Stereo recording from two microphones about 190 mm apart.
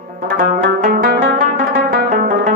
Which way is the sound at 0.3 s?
50° right (ahead or behind).